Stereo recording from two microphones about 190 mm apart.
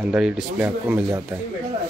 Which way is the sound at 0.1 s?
5° right (ahead or behind).